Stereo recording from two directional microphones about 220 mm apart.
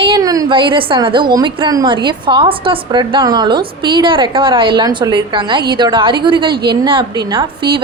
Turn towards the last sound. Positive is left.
turn(degrees=-20)  # may be behind; listen again after turning